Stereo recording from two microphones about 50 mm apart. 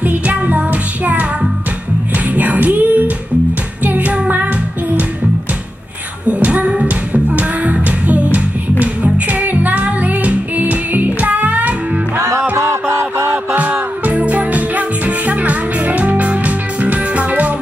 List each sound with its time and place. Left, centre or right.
0.0 s music: right
2.3 s music: right
6.2 s a sound: right
6.7 s music: right
12.2 s music: right
13.6 s music: right